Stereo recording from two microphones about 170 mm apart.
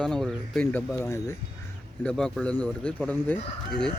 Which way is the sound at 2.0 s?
5° left (ahead or behind).